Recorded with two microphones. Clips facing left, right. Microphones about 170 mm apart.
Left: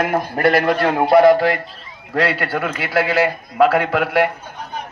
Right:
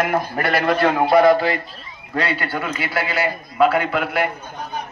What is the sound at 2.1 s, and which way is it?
A man's voice, 85° left.